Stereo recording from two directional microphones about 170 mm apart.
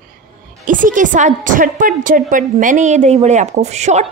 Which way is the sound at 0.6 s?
50° right (ahead or behind).